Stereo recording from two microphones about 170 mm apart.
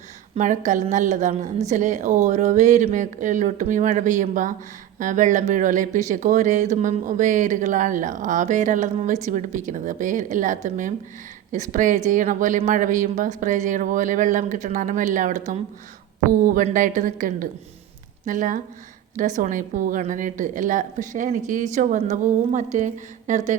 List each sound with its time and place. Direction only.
0.3 s a woman's voice: 45° right (ahead or behind)